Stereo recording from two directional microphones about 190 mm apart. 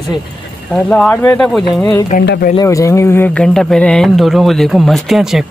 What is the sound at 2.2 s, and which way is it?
Speech, 60° left (ahead or behind).